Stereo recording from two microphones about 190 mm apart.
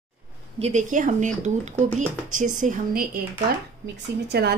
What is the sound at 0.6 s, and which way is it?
Speech, 40° right (ahead or behind).